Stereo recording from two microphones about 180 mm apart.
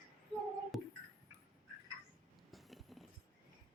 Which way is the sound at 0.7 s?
Centre (ahead or behind).